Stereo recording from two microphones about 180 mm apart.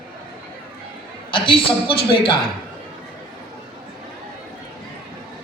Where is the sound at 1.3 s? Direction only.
25° left (ahead or behind).